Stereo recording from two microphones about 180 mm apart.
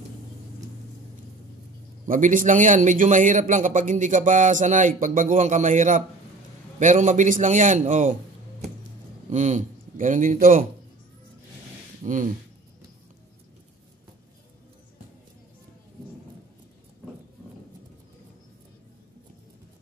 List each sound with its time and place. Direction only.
2.0 s a man's voice: 45° right (ahead or behind)
12.0 s speech: 45° right (ahead or behind)